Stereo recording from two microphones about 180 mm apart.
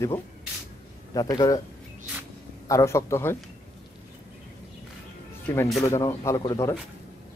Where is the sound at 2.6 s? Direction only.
15° left (ahead or behind).